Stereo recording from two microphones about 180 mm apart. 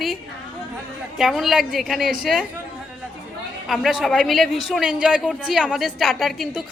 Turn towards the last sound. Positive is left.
turn(degrees=0)  # may be behind; listen again after turning